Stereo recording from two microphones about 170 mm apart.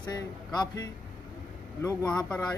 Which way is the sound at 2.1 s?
5° left (ahead or behind).